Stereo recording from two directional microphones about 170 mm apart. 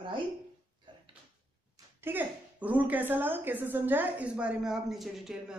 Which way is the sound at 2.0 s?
10° right (ahead or behind).